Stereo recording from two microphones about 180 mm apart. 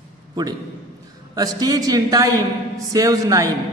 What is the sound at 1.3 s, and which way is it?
A man's voice, 20° right (ahead or behind).